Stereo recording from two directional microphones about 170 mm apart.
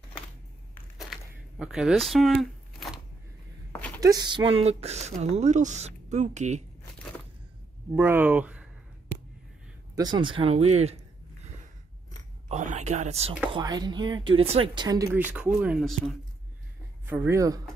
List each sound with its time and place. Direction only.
0.9 s a sound: centre (ahead or behind)
4.0 s speech: 25° right (ahead or behind); by 6.6 s 45° right (ahead or behind)
7.9 s speech: 15° right (ahead or behind)
9.9 s speech: 25° right (ahead or behind)
12.4 s speech: 45° right (ahead or behind)
13.5 s speech: 25° right (ahead or behind)
15.3 s speech: 10° right (ahead or behind)